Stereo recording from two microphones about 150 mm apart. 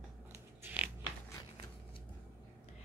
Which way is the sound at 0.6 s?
10° right (ahead or behind).